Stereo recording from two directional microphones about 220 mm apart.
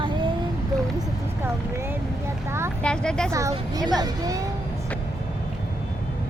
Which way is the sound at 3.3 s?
15° right (ahead or behind).